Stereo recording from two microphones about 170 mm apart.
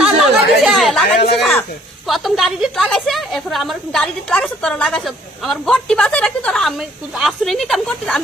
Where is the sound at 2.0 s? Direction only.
Centre (ahead or behind).